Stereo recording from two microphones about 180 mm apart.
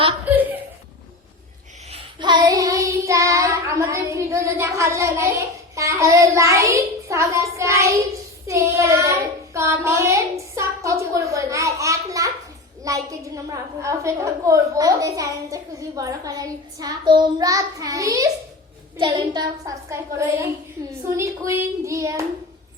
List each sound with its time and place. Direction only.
1.9 s child singing: 25° right (ahead or behind)
12.8 s a woman's voice: 20° right (ahead or behind)